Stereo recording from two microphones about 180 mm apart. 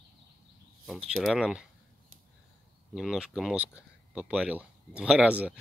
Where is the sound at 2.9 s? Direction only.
Centre (ahead or behind).